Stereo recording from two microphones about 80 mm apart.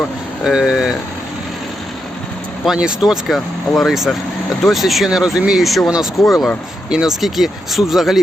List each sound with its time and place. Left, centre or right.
0.4 s speech: centre
2.6 s speech: centre